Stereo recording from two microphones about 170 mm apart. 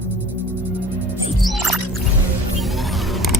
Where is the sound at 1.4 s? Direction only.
Centre (ahead or behind).